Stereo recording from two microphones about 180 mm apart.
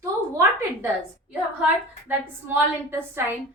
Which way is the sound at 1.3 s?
10° right (ahead or behind).